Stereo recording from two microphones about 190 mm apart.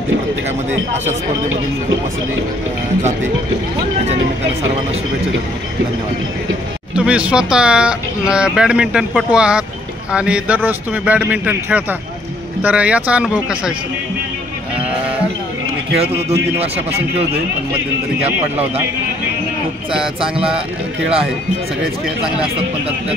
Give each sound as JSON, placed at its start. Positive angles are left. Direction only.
{"t": 7.0, "sound": "speech", "side_deg": -5}
{"t": 20.2, "sound": "speech", "side_deg": -30}